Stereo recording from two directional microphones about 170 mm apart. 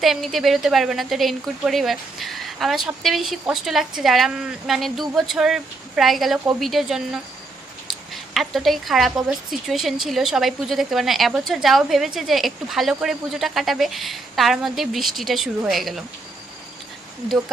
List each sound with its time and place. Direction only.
0.0 s a woman's voice: centre (ahead or behind)